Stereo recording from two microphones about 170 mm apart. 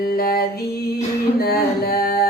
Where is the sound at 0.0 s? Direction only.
65° left (ahead or behind).